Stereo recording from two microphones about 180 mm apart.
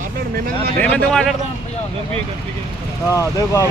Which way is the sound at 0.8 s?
5° left (ahead or behind).